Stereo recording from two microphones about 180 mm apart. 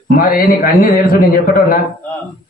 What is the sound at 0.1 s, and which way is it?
A man's voice, 50° left (ahead or behind).